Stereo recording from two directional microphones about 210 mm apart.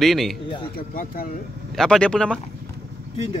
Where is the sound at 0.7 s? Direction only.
45° left (ahead or behind).